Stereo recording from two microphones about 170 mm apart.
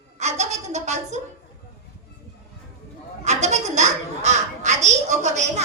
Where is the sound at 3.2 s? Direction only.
40° right (ahead or behind).